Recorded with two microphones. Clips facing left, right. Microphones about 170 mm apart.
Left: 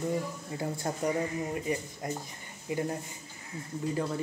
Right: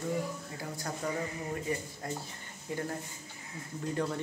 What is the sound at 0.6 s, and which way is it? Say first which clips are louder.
Speech: left 8 dB; 25° left (ahead or behind).